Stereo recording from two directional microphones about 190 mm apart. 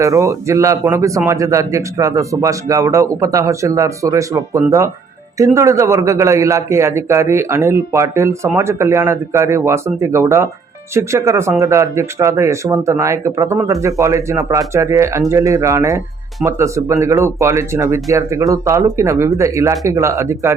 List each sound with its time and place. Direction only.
0.0 s speech: 15° right (ahead or behind)